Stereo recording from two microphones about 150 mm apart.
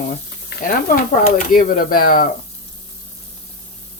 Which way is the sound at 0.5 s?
70° left (ahead or behind).